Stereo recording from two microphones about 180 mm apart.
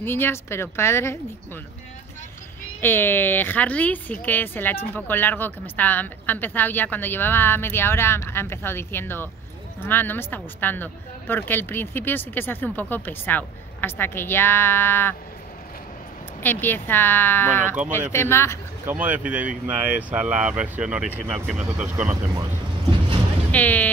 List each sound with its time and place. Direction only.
0.0 s speech: 10° left (ahead or behind)
2.8 s speech: 10° left (ahead or behind)
16.4 s speech: 10° left (ahead or behind)
18.9 s speech: 10° right (ahead or behind)
22.1 s speech: 20° right (ahead or behind)
23.5 s speech: 10° left (ahead or behind)